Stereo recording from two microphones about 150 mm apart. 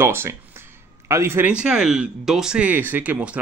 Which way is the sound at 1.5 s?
5° right (ahead or behind).